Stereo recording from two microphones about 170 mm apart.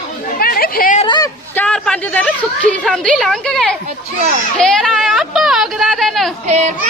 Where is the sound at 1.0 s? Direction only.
25° left (ahead or behind).